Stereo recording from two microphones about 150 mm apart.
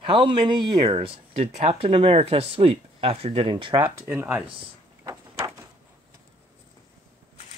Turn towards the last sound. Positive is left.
turn(degrees=-25)  # may be behind; listen again after turning